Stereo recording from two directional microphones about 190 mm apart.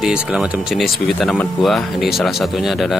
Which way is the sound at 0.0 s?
5° right (ahead or behind).